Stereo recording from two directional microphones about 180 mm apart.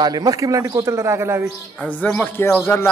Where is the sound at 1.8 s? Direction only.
5° left (ahead or behind).